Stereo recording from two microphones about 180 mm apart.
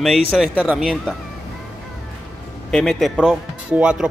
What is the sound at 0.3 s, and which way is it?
Speech, 5° right (ahead or behind).